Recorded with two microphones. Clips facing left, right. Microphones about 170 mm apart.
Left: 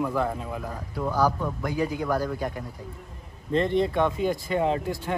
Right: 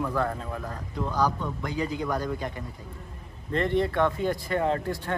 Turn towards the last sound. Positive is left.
turn(degrees=15)  # may be behind; listen again after turning